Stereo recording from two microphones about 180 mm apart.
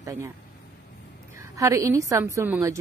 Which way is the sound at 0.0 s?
20° right (ahead or behind).